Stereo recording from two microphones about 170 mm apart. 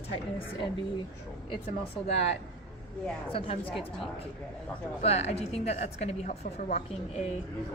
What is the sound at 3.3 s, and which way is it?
Speech, 35° left (ahead or behind).